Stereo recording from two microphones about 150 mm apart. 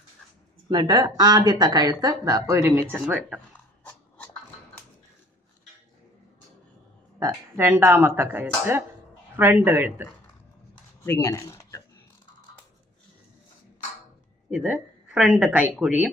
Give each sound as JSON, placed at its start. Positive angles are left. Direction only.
{"t": 0.7, "sound": "speech", "side_deg": -30}
{"t": 7.2, "sound": "speech", "side_deg": -15}
{"t": 11.0, "sound": "speech", "side_deg": 20}
{"t": 14.5, "sound": "speech", "side_deg": -5}